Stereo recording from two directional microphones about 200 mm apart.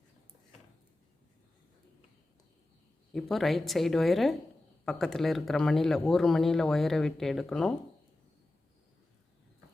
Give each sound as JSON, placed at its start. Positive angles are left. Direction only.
{"t": 3.1, "sound": "speech", "side_deg": 0}